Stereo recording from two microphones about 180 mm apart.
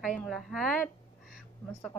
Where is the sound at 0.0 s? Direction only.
5° left (ahead or behind).